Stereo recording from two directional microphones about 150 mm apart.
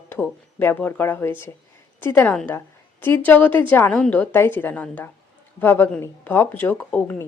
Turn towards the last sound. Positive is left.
turn(degrees=10)  # may be behind; listen again after turning